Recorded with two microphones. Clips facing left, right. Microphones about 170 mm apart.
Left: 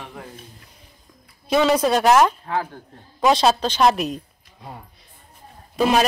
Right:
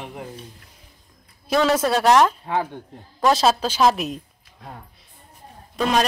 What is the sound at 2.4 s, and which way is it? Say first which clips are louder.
Speech: right 1 dB; 20° right (ahead or behind).